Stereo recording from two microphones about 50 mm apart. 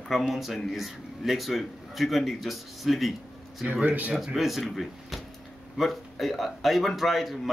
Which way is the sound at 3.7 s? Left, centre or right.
Right.